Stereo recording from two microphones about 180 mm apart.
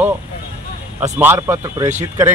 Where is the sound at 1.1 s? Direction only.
10° right (ahead or behind).